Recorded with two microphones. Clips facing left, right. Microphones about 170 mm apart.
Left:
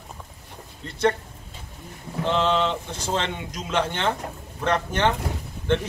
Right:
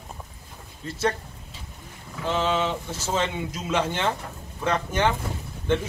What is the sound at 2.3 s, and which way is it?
Speech, 10° right (ahead or behind).